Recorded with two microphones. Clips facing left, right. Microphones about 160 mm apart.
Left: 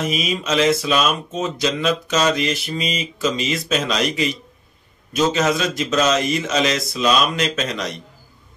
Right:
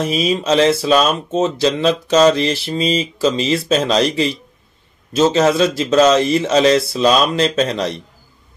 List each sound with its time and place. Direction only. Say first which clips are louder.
0.0 s speech: right 5 dB; 30° right (ahead or behind)